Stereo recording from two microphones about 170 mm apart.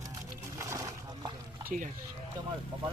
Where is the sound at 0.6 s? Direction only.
20° right (ahead or behind).